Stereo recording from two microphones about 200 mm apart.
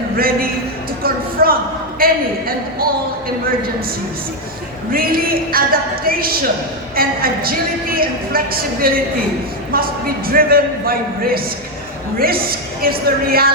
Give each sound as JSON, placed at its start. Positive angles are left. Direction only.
{"t": 0.2, "sound": "a woman's voice", "side_deg": -45}
{"t": 1.0, "sound": "a sound", "side_deg": -50}
{"t": 2.0, "sound": "a woman's voice", "side_deg": -45}
{"t": 4.9, "sound": "a woman's voice", "side_deg": -45}